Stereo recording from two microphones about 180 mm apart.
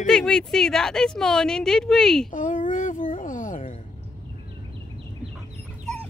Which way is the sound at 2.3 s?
45° left (ahead or behind).